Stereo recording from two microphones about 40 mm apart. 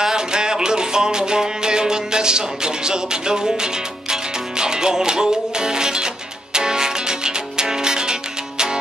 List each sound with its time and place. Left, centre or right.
0.0 s music: centre